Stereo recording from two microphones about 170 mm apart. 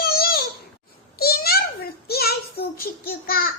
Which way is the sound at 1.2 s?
65° left (ahead or behind).